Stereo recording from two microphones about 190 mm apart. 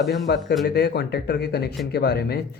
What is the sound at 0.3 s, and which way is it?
A man's voice, 55° left (ahead or behind).